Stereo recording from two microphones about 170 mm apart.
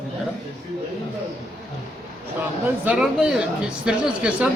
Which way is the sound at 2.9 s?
5° right (ahead or behind).